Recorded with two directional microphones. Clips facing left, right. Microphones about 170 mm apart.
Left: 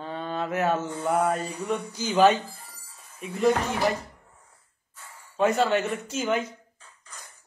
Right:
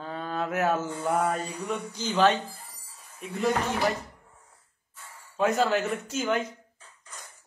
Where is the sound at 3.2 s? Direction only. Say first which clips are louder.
Left 4 dB; centre (ahead or behind).